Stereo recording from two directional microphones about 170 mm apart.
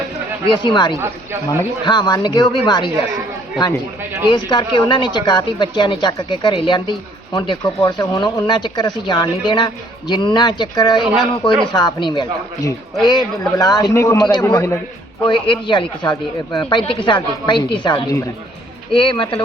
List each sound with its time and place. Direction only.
0.4 s speech: 30° left (ahead or behind)
0.9 s speech: 15° right (ahead or behind)
1.5 s speech: 25° left (ahead or behind)
4.3 s speech: 25° left (ahead or behind)
15.2 s speech: 30° left (ahead or behind)